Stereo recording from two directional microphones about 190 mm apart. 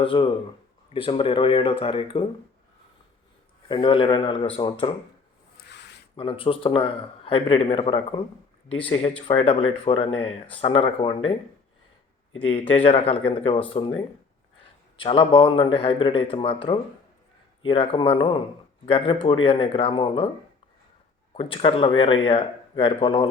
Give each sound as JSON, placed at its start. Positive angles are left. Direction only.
{"t": 0.0, "sound": "a man's voice", "side_deg": 25}
{"t": 3.7, "sound": "a man's voice", "side_deg": 25}
{"t": 5.5, "sound": "a sound", "side_deg": 65}
{"t": 6.1, "sound": "a man's voice", "side_deg": 25}
{"t": 12.5, "sound": "a man's voice", "side_deg": 30}
{"t": 14.9, "sound": "a man's voice", "side_deg": 25}
{"t": 21.3, "sound": "a man's voice", "side_deg": 30}